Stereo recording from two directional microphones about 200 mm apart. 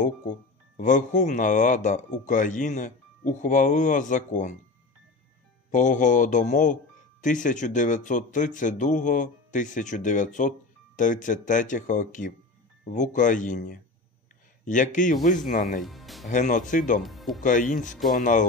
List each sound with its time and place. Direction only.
0.3 s speech: 40° left (ahead or behind)
5.7 s speech: 40° left (ahead or behind)
14.6 s a man's voice: 40° left (ahead or behind)
15.8 s speech: centre (ahead or behind)
16.3 s speech: 40° left (ahead or behind)
17.0 s speech: centre (ahead or behind)
17.4 s speech: 40° left (ahead or behind)